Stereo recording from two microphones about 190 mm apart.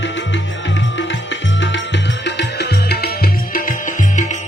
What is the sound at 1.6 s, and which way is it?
Music, 70° left (ahead or behind).